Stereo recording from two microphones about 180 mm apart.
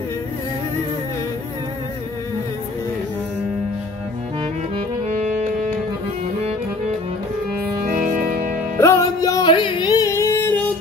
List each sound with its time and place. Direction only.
4.7 s music: 40° right (ahead or behind)
7.8 s music: 50° right (ahead or behind)
8.7 s music: 15° left (ahead or behind)